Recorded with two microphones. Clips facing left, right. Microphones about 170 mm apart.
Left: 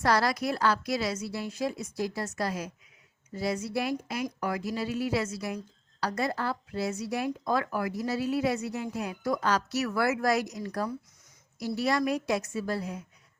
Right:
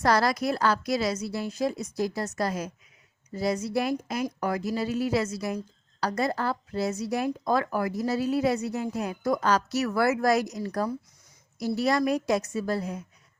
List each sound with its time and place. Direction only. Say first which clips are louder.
0.0 s speech: right 2 dB; 45° right (ahead or behind)